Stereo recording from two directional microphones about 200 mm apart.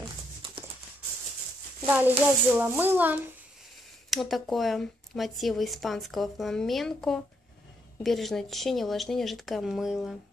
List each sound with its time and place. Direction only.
1.9 s a child's voice: 10° right (ahead or behind)